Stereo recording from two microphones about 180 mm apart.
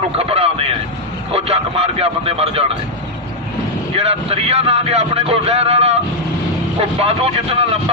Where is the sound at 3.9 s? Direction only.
35° right (ahead or behind).